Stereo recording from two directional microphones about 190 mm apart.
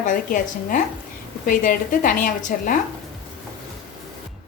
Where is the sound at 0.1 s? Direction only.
45° left (ahead or behind).